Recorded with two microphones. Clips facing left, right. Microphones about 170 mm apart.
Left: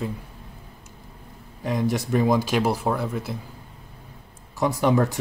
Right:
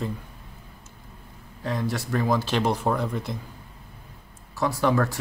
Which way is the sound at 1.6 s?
15° left (ahead or behind).